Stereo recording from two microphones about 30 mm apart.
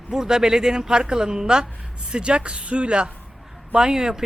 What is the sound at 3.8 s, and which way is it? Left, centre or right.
Speech, right.